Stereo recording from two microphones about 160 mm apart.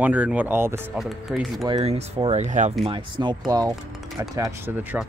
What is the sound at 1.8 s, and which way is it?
Speech, 40° right (ahead or behind).